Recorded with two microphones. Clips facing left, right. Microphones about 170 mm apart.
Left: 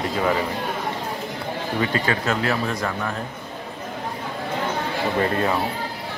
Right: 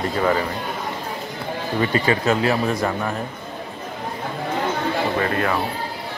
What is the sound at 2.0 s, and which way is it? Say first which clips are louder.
Speech: right 4 dB; 15° right (ahead or behind).